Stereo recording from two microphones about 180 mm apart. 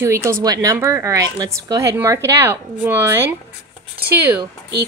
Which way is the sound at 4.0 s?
60° right (ahead or behind).